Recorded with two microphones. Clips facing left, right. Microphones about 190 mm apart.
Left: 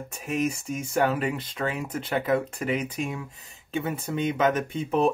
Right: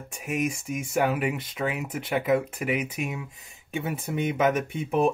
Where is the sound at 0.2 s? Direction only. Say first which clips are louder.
Left 1 dB; 10° right (ahead or behind).